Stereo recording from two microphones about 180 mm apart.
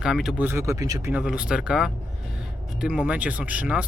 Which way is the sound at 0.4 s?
15° right (ahead or behind).